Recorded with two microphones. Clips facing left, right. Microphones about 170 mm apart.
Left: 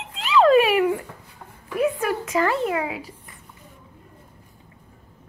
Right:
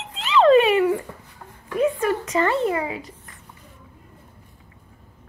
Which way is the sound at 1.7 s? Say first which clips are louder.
Right 2 dB; 10° left (ahead or behind).